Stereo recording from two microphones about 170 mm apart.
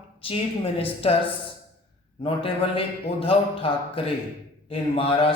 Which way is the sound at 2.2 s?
30° left (ahead or behind).